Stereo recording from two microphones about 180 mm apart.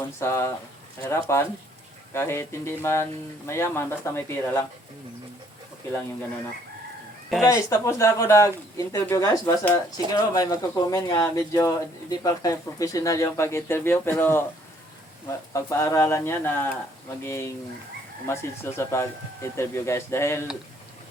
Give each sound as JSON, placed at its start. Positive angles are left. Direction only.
{"t": 0.2, "sound": "speech", "side_deg": 15}
{"t": 7.4, "sound": "speech", "side_deg": 15}